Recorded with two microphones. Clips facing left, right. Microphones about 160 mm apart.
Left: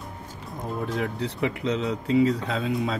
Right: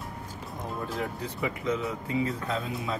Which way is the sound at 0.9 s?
70° left (ahead or behind).